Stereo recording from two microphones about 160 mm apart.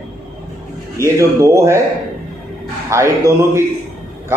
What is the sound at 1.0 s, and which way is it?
Speech, 20° right (ahead or behind).